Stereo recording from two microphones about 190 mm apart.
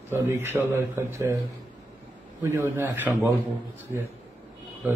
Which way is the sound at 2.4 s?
15° right (ahead or behind).